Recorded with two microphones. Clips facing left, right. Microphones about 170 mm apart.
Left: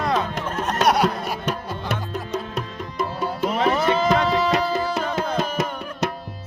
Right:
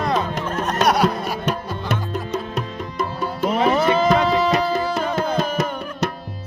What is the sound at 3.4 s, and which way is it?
Music, 5° right (ahead or behind).